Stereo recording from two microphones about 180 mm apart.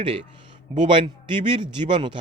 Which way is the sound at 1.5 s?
25° right (ahead or behind).